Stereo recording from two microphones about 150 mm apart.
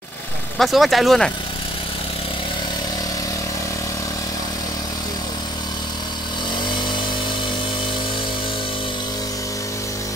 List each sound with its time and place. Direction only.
0.6 s speech: centre (ahead or behind)